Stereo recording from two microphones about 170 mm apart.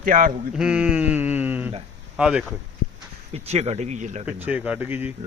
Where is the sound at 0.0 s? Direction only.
50° right (ahead or behind).